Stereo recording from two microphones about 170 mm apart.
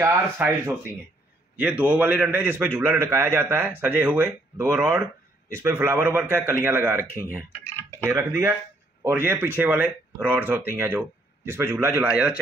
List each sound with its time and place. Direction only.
0.0 s a man's voice: 15° right (ahead or behind)